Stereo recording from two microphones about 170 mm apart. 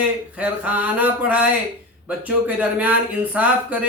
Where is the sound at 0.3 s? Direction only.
10° right (ahead or behind).